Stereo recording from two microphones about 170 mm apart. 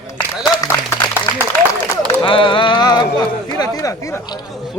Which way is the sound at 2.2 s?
30° left (ahead or behind).